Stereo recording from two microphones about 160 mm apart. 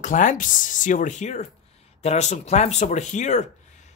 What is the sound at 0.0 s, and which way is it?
Speech, 55° left (ahead or behind).